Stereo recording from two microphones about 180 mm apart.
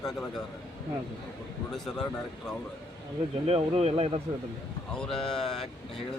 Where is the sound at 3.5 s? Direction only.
35° right (ahead or behind).